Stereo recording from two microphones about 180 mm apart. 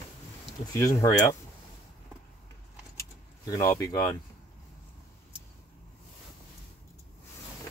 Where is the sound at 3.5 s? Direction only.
20° left (ahead or behind).